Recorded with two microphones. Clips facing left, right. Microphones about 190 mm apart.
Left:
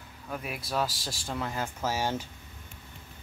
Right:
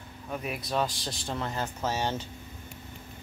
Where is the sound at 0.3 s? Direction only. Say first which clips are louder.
Right 2 dB; centre (ahead or behind).